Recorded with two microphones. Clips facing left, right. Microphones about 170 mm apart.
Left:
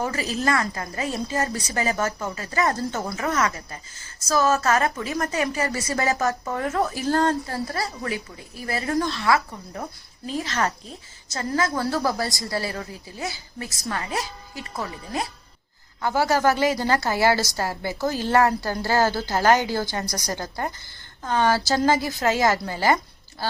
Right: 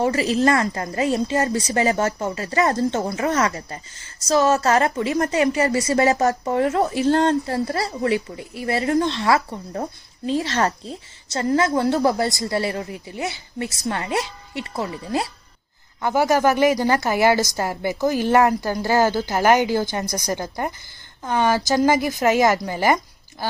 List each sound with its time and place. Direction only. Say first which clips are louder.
0.0 s a woman's voice: right 7 dB; 30° right (ahead or behind)
16.0 s a woman's voice: right 3 dB; 15° right (ahead or behind)